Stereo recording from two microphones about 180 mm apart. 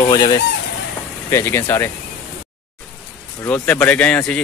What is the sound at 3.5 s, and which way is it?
Speech, 10° left (ahead or behind).